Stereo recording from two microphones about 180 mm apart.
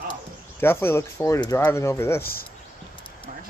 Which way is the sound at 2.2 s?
55° left (ahead or behind).